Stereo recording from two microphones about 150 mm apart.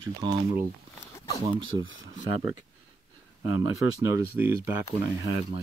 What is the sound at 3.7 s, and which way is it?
Speech, 20° right (ahead or behind).